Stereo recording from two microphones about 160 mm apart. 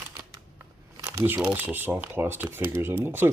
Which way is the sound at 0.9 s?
25° right (ahead or behind).